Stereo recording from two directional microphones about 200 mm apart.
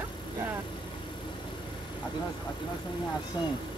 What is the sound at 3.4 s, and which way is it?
Speech, 20° left (ahead or behind).